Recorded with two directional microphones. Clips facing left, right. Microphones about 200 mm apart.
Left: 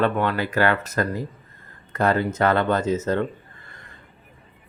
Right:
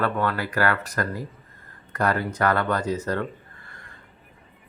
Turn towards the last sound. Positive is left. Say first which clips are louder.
# left 4 dB
turn(degrees=25)  # may be behind; listen again after turning